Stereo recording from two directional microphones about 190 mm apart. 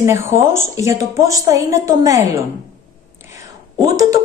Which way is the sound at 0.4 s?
15° right (ahead or behind).